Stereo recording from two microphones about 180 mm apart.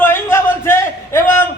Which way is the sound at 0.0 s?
15° left (ahead or behind).